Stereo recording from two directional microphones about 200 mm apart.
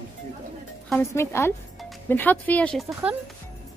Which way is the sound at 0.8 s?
10° left (ahead or behind).